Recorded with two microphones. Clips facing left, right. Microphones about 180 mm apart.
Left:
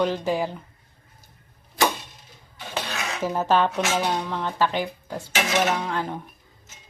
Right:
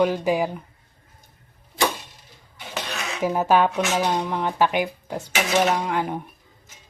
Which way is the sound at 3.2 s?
15° right (ahead or behind).